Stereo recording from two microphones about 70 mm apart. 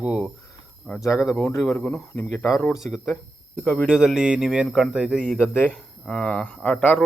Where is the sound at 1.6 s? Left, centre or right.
Left.